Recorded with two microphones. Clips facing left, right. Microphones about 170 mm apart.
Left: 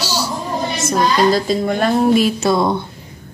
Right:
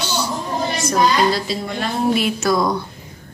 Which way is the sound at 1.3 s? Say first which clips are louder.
Left 6 dB; 50° left (ahead or behind).